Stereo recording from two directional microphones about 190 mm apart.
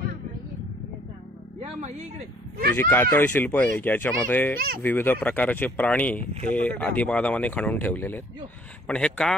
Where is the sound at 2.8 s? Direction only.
10° left (ahead or behind).